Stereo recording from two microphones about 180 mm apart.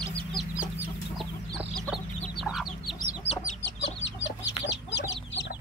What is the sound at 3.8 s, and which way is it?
Chicken, 90° left.